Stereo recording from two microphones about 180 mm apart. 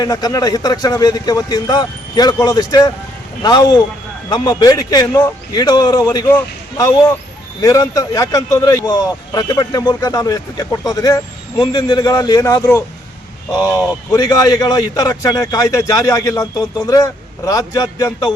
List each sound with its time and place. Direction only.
0.0 s speech: 20° left (ahead or behind)